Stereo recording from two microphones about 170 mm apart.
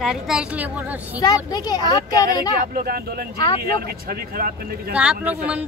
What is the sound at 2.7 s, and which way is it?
Speech, 65° right (ahead or behind).